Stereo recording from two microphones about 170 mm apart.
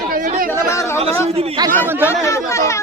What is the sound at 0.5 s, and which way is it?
Speech, 15° left (ahead or behind).